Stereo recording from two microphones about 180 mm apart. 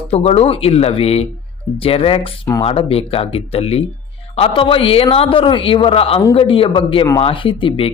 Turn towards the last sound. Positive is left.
turn(degrees=30)  # may be behind; listen again after turning